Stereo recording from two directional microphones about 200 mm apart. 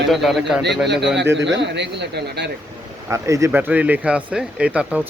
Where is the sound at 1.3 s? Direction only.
65° right (ahead or behind).